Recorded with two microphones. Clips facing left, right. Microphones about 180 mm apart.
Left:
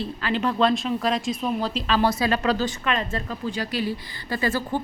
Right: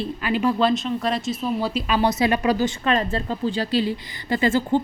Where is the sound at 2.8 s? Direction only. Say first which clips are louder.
Right 4 dB; 35° right (ahead or behind).